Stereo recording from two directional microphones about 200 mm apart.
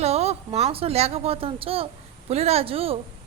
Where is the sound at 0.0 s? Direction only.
30° right (ahead or behind).